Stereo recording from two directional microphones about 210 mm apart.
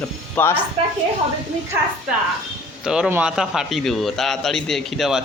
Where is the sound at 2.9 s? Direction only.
5° right (ahead or behind).